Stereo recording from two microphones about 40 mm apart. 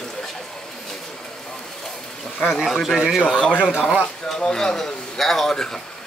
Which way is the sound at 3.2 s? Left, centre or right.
Left.